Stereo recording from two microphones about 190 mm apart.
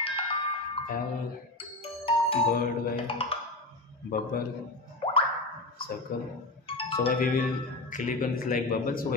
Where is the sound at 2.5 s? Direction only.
50° left (ahead or behind).